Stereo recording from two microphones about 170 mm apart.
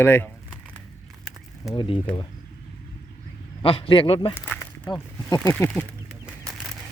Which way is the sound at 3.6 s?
30° left (ahead or behind).